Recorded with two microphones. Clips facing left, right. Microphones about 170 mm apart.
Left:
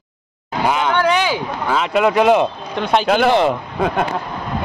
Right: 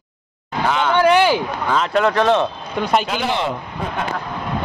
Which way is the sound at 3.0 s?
60° left (ahead or behind).